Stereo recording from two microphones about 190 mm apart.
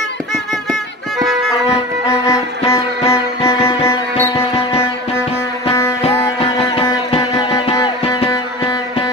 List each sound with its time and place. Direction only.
2.7 s music: 15° left (ahead or behind)
6.0 s music: 30° left (ahead or behind)